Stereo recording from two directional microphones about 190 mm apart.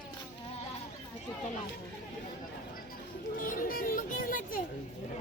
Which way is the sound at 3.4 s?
45° left (ahead or behind).